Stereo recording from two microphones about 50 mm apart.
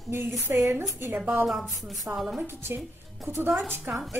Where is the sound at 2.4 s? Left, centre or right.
Right.